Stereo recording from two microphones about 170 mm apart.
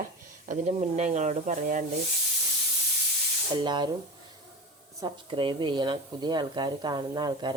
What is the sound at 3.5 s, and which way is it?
Speech, 25° right (ahead or behind).